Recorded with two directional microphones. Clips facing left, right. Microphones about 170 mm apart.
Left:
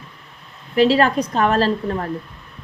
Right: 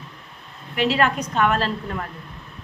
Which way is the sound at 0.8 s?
35° left (ahead or behind).